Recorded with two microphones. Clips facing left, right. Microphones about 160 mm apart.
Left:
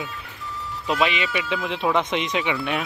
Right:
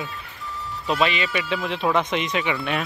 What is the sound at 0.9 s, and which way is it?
Speech, 15° left (ahead or behind).